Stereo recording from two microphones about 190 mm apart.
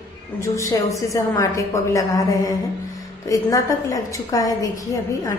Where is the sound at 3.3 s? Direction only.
15° left (ahead or behind).